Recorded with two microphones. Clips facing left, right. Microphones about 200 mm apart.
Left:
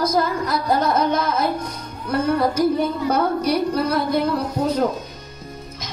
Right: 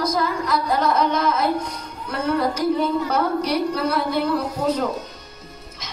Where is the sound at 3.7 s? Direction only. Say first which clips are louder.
Left 2 dB; 40° left (ahead or behind).